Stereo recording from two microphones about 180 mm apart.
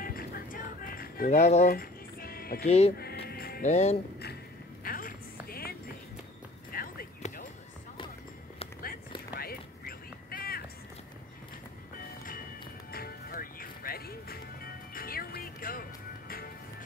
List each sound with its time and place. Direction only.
0.0 s music: 55° left (ahead or behind)
1.3 s music: 40° left (ahead or behind); by 2.6 s 55° left (ahead or behind)
2.6 s speech: 35° left (ahead or behind)
3.0 s music: 60° left (ahead or behind)
3.6 s speech: 40° left (ahead or behind)
4.8 s music: 50° left (ahead or behind)
6.7 s a sound: 55° left (ahead or behind)
9.3 s a sound: 55° left (ahead or behind)
12.9 s music: 55° left (ahead or behind)